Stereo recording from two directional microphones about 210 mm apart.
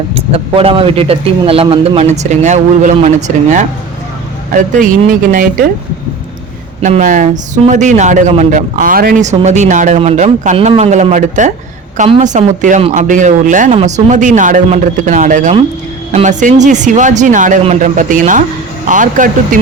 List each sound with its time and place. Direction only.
0.1 s speech: 25° right (ahead or behind); by 5.6 s 40° right (ahead or behind)
6.8 s speech: 35° right (ahead or behind)